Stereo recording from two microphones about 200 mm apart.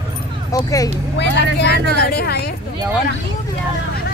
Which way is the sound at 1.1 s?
55° left (ahead or behind).